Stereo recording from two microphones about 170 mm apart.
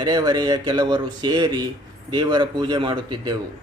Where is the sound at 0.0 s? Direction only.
20° right (ahead or behind).